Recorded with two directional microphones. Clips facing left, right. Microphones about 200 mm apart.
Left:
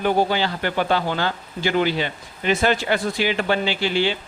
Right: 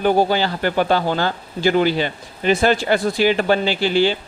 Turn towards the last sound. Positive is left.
turn(degrees=-35)  # may be behind; listen again after turning